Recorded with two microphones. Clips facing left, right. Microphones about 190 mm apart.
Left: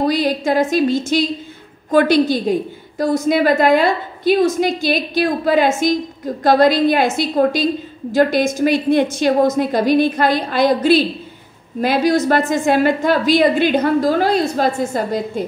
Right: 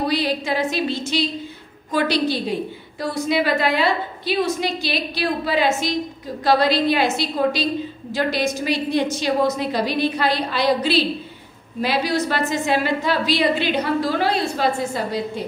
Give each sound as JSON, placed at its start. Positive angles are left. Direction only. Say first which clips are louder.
{"t": 0.0, "sound": "a woman's voice", "louder": "left 5 dB", "side_deg": 45}